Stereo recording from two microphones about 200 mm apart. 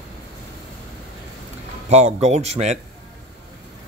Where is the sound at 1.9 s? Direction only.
35° right (ahead or behind).